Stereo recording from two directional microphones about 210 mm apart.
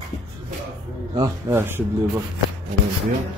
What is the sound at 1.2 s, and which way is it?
Speech, 10° right (ahead or behind).